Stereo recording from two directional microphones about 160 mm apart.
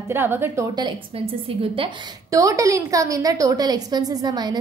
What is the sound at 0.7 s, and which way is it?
A woman's voice, 35° right (ahead or behind).